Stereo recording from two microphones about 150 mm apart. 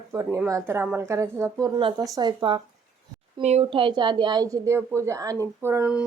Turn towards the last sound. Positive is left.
turn(degrees=-15)  # may be behind; listen again after turning